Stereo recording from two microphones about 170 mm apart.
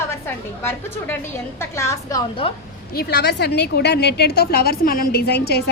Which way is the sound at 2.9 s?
70° left (ahead or behind).